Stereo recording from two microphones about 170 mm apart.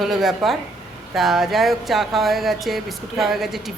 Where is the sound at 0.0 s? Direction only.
Centre (ahead or behind).